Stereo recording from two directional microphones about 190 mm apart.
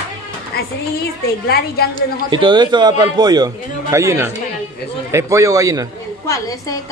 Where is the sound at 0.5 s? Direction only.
55° left (ahead or behind).